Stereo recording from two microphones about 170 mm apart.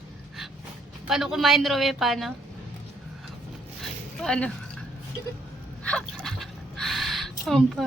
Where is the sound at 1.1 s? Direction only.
Centre (ahead or behind).